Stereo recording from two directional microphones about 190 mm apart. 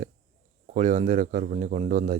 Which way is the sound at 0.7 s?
40° right (ahead or behind).